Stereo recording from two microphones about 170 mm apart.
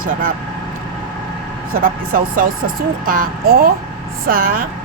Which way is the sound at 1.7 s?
55° right (ahead or behind).